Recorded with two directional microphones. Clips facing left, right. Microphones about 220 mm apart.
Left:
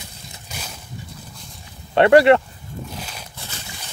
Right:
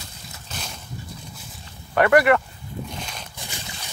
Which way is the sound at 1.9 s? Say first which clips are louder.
Left 5 dB; 25° left (ahead or behind).